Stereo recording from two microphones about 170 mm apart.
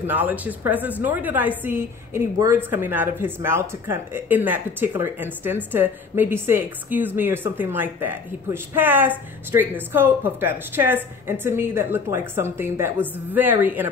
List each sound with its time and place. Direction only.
0.0 s a woman's voice: 10° right (ahead or behind)